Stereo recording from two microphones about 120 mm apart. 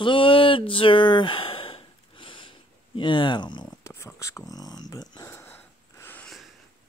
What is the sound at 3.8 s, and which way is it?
Speech, 25° left (ahead or behind).